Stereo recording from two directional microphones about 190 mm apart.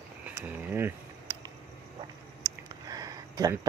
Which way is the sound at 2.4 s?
20° right (ahead or behind).